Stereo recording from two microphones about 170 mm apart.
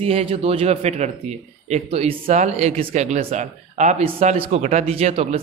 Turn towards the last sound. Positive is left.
turn(degrees=-40)  # may be behind; listen again after turning